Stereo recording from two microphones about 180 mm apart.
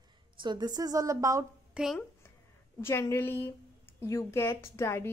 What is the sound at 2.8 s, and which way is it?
A woman's voice, 15° left (ahead or behind).